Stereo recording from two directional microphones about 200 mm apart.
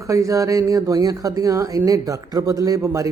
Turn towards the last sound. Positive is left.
turn(degrees=-15)  # may be behind; listen again after turning